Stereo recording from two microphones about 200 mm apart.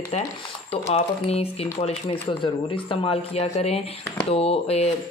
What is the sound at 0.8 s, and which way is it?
Speech, 30° left (ahead or behind).